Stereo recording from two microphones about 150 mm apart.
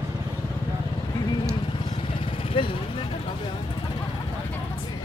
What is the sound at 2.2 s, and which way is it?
Vehicle, 35° left (ahead or behind).